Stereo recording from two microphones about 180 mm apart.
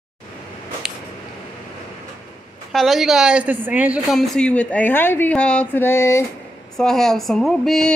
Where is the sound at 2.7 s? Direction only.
Centre (ahead or behind).